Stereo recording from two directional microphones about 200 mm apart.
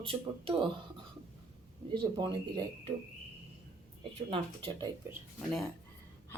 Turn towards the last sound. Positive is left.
turn(degrees=0)  # may be behind; listen again after turning